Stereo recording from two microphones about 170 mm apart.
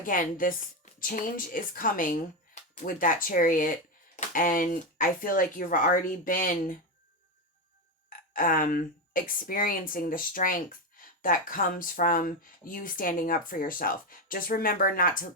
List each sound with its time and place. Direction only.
0.0 s speech: 55° left (ahead or behind)
8.3 s speech: 55° left (ahead or behind)